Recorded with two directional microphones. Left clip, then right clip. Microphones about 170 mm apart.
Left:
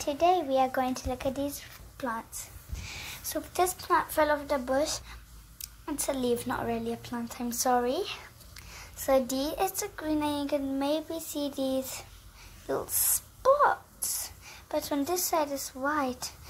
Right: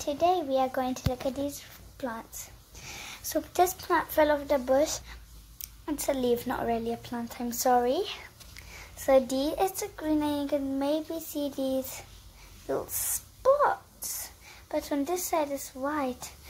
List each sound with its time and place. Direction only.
0.0 s speech: 10° left (ahead or behind)
2.7 s speech: 25° right (ahead or behind); by 16.3 s 10° left (ahead or behind)